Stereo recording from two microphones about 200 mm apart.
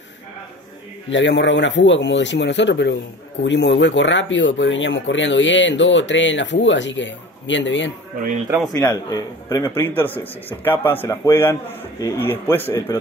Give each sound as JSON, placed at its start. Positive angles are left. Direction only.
{"t": 1.1, "sound": "speech", "side_deg": 65}
{"t": 8.7, "sound": "a man's voice", "side_deg": 20}